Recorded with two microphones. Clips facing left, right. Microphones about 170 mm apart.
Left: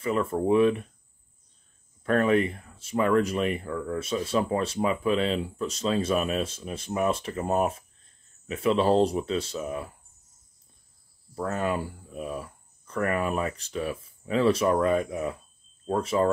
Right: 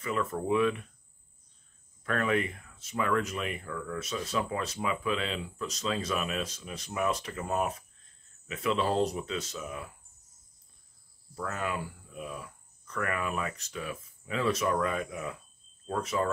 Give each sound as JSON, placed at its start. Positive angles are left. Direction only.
{"t": 0.0, "sound": "speech", "side_deg": 30}
{"t": 2.0, "sound": "speech", "side_deg": 35}
{"t": 11.3, "sound": "speech", "side_deg": 35}